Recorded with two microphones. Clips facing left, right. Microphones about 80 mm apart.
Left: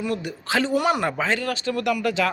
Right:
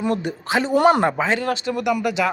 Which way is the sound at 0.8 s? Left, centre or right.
Right.